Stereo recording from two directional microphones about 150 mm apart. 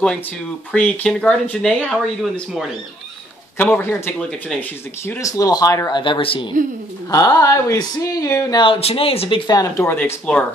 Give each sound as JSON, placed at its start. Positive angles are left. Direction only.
{"t": 0.7, "sound": "speech", "side_deg": 10}
{"t": 5.2, "sound": "speech", "side_deg": 25}
{"t": 7.1, "sound": "speech", "side_deg": 20}
{"t": 8.6, "sound": "speech", "side_deg": 40}
{"t": 9.5, "sound": "speech", "side_deg": 20}
{"t": 9.9, "sound": "speech", "side_deg": 10}